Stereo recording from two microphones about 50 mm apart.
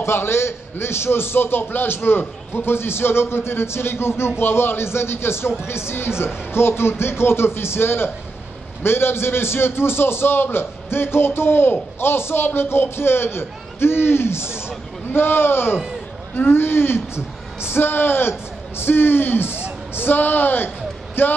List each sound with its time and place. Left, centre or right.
0.0 s a man's voice: left